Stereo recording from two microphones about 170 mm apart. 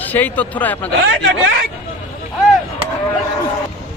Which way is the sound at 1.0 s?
90° right.